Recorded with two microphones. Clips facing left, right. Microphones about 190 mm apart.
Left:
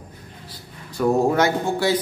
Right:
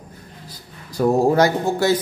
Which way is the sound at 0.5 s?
35° right (ahead or behind).